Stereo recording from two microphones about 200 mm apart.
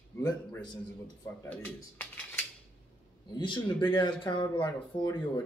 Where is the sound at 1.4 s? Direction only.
5° left (ahead or behind).